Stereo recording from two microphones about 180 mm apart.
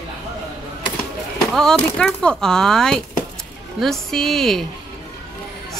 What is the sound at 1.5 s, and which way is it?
A woman's voice, 5° left (ahead or behind).